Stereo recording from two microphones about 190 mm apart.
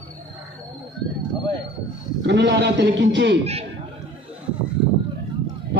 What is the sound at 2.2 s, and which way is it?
A man's voice, 65° right (ahead or behind).